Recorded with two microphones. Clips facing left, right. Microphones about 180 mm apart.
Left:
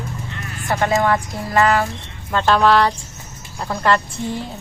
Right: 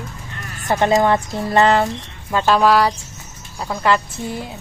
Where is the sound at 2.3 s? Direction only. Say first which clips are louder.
Even; 5° right (ahead or behind).